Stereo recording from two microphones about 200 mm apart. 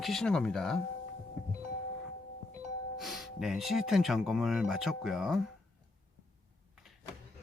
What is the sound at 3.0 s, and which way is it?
Speech, centre (ahead or behind).